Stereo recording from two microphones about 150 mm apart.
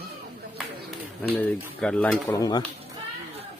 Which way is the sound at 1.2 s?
10° left (ahead or behind).